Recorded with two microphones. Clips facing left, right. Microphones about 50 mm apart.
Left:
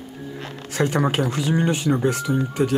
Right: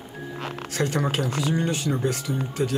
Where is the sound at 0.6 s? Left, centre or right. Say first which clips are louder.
Left 5 dB; centre.